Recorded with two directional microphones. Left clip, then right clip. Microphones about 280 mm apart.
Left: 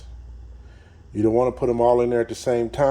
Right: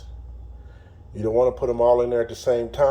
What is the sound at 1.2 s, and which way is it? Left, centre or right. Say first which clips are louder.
A man's voice: even; left.